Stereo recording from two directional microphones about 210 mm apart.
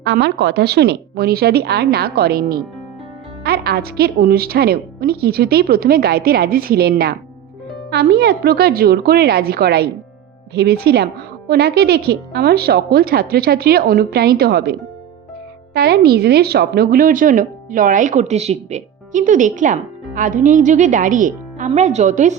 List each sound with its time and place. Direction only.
0.0 s a woman's voice: 55° right (ahead or behind); by 22.4 s 35° right (ahead or behind)